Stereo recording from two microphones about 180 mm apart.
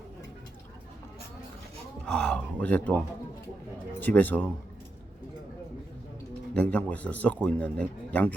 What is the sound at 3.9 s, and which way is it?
Speech, 10° left (ahead or behind).